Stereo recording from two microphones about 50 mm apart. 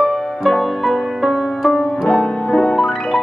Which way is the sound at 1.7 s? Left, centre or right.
Centre.